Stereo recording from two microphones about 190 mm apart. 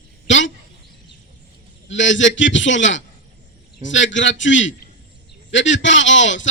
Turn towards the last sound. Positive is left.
turn(degrees=80)